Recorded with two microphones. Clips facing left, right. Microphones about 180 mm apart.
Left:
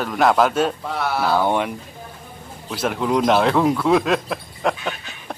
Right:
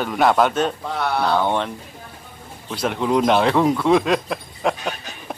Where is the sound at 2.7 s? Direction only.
5° left (ahead or behind).